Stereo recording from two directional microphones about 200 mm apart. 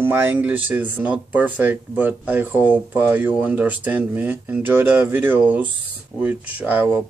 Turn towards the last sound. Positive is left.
turn(degrees=-10)  # may be behind; listen again after turning